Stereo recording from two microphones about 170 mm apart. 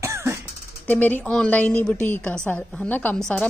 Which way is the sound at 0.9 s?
10° left (ahead or behind).